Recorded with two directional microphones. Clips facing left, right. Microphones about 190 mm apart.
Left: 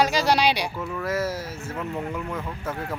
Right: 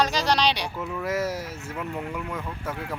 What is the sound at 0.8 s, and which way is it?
Speech, 5° right (ahead or behind).